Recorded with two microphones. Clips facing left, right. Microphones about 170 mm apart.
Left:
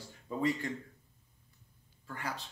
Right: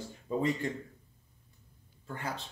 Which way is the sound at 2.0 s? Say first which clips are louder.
Right 2 dB; 25° right (ahead or behind).